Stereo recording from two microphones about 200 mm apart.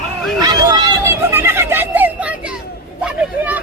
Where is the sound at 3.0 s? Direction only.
10° right (ahead or behind).